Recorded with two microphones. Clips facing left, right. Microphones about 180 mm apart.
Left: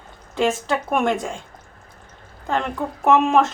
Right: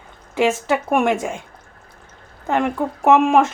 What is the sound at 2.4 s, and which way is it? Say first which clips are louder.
Speech: right 4 dB; 15° right (ahead or behind).